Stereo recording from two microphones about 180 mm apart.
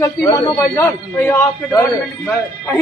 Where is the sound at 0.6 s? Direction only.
15° left (ahead or behind).